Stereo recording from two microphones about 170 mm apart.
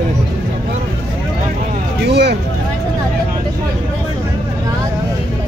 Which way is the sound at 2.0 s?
75° right (ahead or behind).